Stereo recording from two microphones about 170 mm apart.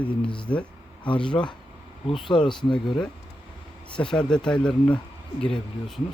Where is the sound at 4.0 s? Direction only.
5° left (ahead or behind).